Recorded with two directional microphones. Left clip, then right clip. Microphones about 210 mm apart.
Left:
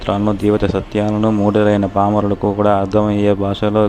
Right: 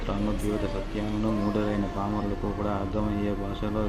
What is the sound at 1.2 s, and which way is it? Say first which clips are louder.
Speech: left 14 dB; 45° left (ahead or behind).